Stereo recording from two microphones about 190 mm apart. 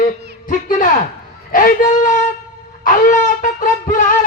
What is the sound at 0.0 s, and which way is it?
Music, 45° left (ahead or behind).